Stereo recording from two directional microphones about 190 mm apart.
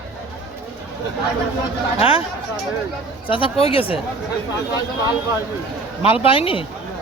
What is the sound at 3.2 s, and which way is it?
Speech, 25° left (ahead or behind).